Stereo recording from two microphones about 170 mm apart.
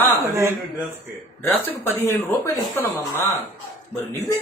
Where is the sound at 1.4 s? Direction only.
10° left (ahead or behind).